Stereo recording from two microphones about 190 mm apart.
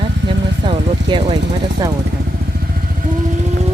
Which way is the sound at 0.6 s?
25° right (ahead or behind).